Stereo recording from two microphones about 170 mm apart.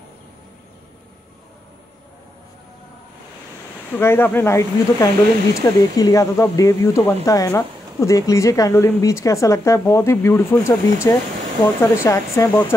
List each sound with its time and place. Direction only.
3.9 s a woman's voice: 15° left (ahead or behind)